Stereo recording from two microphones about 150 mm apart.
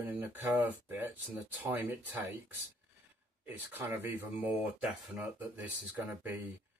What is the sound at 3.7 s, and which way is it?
Speech, 15° right (ahead or behind).